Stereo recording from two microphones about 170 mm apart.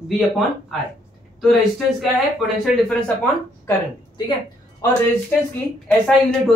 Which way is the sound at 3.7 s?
25° left (ahead or behind).